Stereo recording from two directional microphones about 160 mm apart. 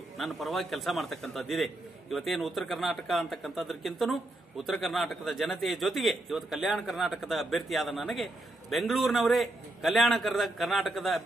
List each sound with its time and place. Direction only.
0.2 s a man's voice: centre (ahead or behind)